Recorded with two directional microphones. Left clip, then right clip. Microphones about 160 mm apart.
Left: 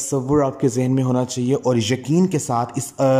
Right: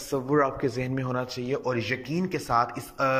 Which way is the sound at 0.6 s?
50° left (ahead or behind).